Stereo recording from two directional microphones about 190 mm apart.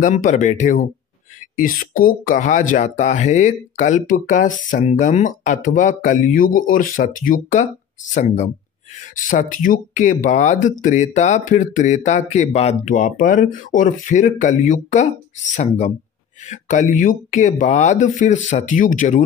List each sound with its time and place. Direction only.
0.0 s speech: 40° left (ahead or behind)